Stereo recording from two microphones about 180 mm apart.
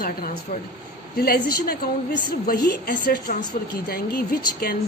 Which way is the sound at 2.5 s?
60° left (ahead or behind).